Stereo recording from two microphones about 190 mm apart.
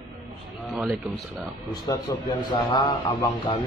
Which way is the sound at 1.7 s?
20° left (ahead or behind).